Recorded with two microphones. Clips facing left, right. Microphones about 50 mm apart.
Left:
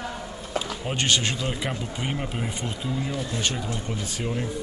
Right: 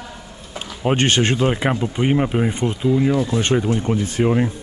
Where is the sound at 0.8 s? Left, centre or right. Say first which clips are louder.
Right 10 dB; right.